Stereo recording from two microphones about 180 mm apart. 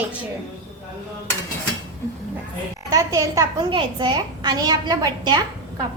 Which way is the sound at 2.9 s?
20° right (ahead or behind).